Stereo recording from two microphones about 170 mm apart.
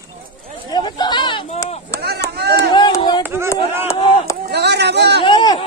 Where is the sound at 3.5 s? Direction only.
15° left (ahead or behind).